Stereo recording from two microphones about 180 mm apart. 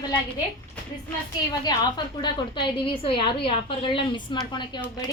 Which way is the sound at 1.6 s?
25° left (ahead or behind).